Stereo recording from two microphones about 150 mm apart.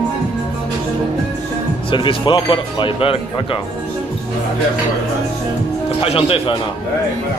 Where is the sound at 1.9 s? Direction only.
35° left (ahead or behind).